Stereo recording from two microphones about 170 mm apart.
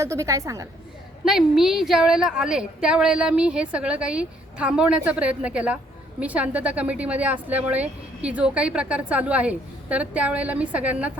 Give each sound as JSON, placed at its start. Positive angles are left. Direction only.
{"t": 0.0, "sound": "a woman's voice", "side_deg": -20}
{"t": 1.2, "sound": "a woman's voice", "side_deg": 0}